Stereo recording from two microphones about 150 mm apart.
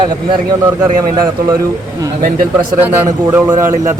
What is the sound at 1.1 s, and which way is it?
Speech, 30° right (ahead or behind).